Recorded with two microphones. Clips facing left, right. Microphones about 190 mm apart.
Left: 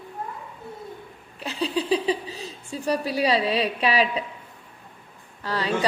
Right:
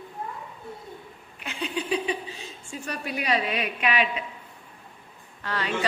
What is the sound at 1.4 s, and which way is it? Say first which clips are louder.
Speech: left 5 dB; 35° left (ahead or behind).